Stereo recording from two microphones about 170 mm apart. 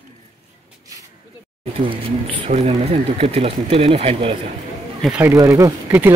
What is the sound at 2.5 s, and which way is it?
Speech, 40° right (ahead or behind).